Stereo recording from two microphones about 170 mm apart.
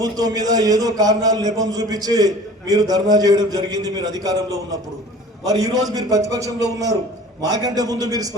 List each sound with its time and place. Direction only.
0.0 s a man's voice: 20° right (ahead or behind)
5.5 s a man's voice: 20° right (ahead or behind)